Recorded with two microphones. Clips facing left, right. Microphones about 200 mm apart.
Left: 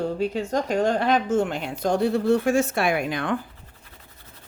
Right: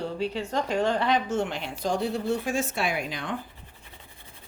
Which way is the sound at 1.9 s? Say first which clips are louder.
Left 7 dB; 65° left (ahead or behind).